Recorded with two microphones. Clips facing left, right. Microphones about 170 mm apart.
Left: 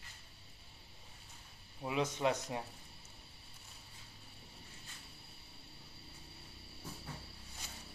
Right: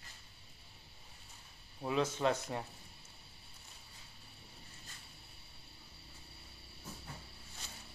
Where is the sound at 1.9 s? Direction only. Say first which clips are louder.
Right 1 dB; 15° left (ahead or behind).